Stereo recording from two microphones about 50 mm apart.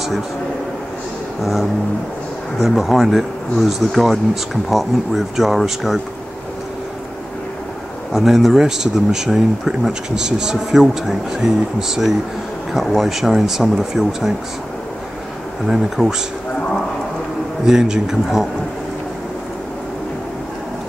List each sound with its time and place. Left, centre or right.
1.4 s speech: centre
8.1 s speech: centre
15.6 s speech: centre
17.6 s speech: centre